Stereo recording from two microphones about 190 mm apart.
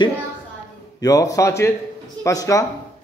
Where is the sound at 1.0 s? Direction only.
20° left (ahead or behind).